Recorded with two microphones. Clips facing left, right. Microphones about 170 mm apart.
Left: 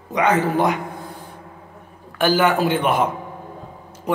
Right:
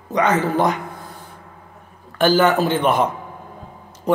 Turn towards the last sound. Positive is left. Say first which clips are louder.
# right 4 dB
turn(degrees=10)  # may be behind; listen again after turning